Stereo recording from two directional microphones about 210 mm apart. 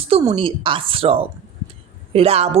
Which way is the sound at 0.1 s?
20° right (ahead or behind).